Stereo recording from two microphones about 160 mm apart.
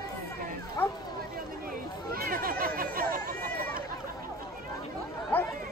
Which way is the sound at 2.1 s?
65° right (ahead or behind).